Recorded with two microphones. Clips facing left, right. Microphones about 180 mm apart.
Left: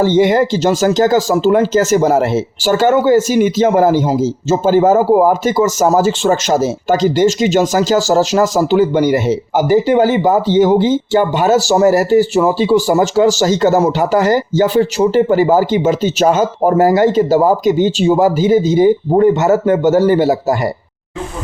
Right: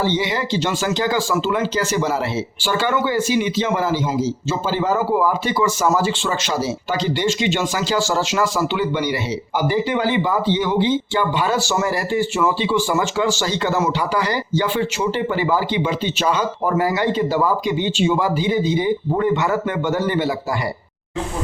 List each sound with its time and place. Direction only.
0.0 s speech: 50° left (ahead or behind)